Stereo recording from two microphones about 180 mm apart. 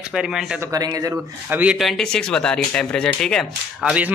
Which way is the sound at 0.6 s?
20° right (ahead or behind).